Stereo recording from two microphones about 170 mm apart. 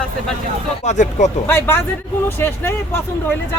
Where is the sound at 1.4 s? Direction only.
15° left (ahead or behind).